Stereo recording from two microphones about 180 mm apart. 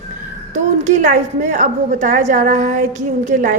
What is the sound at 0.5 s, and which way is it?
A woman's voice, 40° right (ahead or behind).